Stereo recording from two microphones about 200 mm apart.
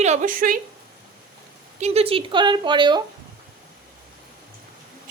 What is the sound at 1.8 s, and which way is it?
A woman's voice, 30° right (ahead or behind).